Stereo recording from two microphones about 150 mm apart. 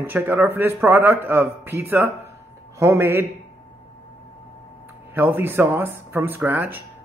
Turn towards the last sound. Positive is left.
turn(degrees=-15)  # may be behind; listen again after turning